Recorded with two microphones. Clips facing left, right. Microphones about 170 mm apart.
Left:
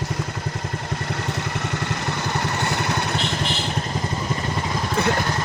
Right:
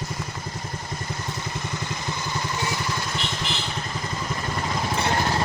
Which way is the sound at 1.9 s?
65° left (ahead or behind).